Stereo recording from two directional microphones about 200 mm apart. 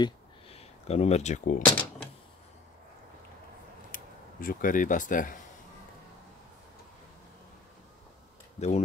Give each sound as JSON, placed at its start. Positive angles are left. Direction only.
{"t": 0.0, "sound": "a sound", "side_deg": 30}
{"t": 3.9, "sound": "speech", "side_deg": 45}
{"t": 8.5, "sound": "speech", "side_deg": 35}